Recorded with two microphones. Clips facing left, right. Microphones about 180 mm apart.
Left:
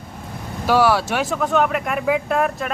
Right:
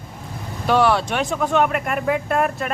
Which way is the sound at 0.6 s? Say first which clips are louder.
Left 1 dB; 5° left (ahead or behind).